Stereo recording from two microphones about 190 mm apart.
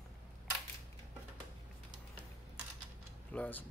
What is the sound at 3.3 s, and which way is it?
Speech, 10° left (ahead or behind).